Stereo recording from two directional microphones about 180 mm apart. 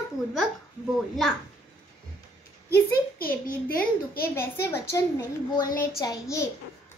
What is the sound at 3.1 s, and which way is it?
A child's voice, 55° left (ahead or behind).